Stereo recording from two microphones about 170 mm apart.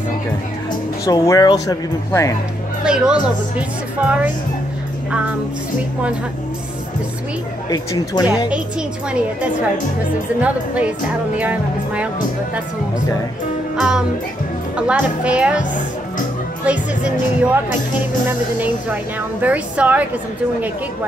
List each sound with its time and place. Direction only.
1.0 s speech: 20° left (ahead or behind)
2.8 s speech: 5° right (ahead or behind)
7.7 s speech: 25° left (ahead or behind)
10.4 s speech: 10° right (ahead or behind)
13.7 s music: 5° right (ahead or behind)
14.8 s speech: 5° right (ahead or behind)
16.6 s speech: 5° right (ahead or behind)
19.4 s speech: 10° right (ahead or behind)